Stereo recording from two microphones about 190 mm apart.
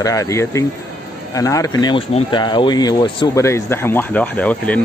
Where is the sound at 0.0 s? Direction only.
15° left (ahead or behind).